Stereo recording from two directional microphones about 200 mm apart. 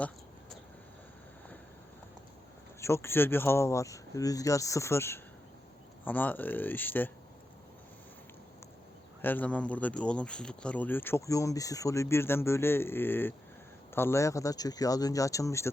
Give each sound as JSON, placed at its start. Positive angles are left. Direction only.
{"t": 2.8, "sound": "speech", "side_deg": 15}
{"t": 9.2, "sound": "speech", "side_deg": 10}